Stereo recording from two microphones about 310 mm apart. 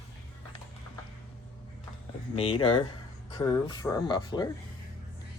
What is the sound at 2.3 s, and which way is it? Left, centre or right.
Speech, centre.